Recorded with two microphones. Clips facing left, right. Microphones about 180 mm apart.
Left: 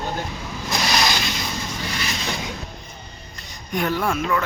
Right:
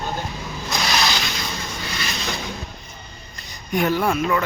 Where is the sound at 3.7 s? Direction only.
5° right (ahead or behind).